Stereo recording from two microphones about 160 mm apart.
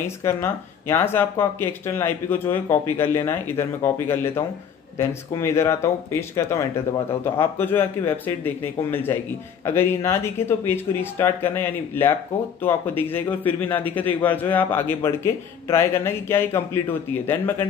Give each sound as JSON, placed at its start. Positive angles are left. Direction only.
{"t": 0.2, "sound": "a man's voice", "side_deg": 15}